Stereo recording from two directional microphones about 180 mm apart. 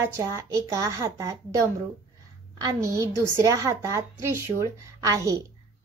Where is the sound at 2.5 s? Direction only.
20° right (ahead or behind).